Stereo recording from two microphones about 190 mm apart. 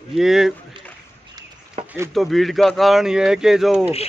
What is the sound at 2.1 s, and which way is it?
Speech, centre (ahead or behind).